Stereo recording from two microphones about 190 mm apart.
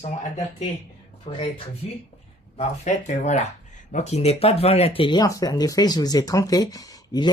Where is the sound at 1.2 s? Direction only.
25° left (ahead or behind).